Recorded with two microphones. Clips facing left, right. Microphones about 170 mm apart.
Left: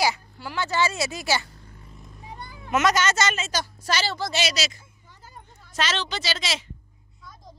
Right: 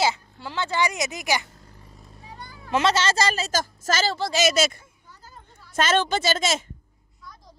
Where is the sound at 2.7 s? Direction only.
30° right (ahead or behind); by 4.9 s 55° right (ahead or behind).